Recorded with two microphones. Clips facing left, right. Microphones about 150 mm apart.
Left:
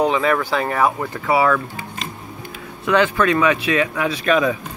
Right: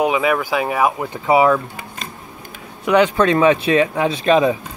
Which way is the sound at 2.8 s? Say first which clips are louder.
Right 3 dB; 15° right (ahead or behind).